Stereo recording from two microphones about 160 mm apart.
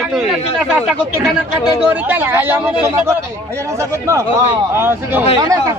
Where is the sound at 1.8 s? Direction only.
10° right (ahead or behind).